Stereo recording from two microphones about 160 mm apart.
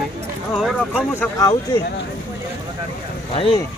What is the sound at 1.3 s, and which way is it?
Speech, 25° left (ahead or behind).